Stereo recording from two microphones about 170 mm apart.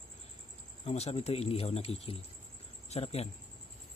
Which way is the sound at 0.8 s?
40° left (ahead or behind).